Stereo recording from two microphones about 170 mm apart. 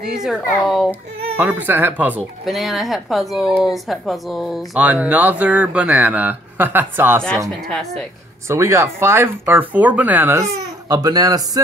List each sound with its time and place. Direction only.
0.2 s a child's voice: centre (ahead or behind)
7.4 s a child's voice: centre (ahead or behind)
8.5 s a woman's voice: 15° right (ahead or behind)
10.9 s speech: 20° right (ahead or behind)